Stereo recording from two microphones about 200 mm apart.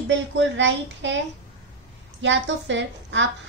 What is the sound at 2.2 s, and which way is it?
Speech, 65° right (ahead or behind).